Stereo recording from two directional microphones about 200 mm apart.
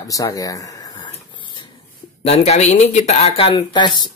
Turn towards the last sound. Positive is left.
turn(degrees=20)  # may be behind; listen again after turning